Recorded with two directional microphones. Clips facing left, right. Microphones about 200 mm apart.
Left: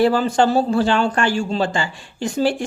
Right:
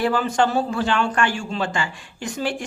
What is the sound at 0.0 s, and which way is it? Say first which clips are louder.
A man's voice: left 4 dB; 30° left (ahead or behind).